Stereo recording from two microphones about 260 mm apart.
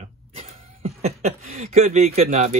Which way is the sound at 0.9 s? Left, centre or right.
Right.